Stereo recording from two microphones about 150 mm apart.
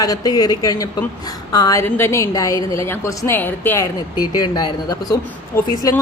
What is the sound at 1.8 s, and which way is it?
A woman's voice, 15° left (ahead or behind).